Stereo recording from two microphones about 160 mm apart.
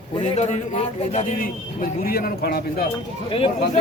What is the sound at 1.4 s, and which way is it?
Speech, 65° left (ahead or behind).